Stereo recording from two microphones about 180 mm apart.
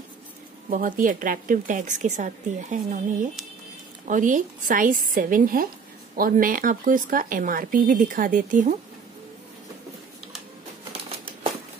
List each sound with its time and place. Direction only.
0.7 s a woman's voice: 50° right (ahead or behind)